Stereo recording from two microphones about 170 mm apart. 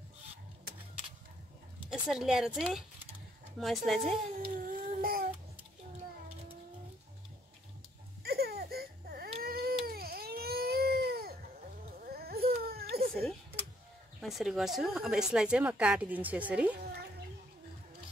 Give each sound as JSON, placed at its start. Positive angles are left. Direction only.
{"t": 1.9, "sound": "a woman's voice", "side_deg": -5}
{"t": 4.4, "sound": "child singing", "side_deg": -60}
{"t": 8.2, "sound": "baby cry", "side_deg": -65}
{"t": 14.2, "sound": "a woman's voice", "side_deg": 0}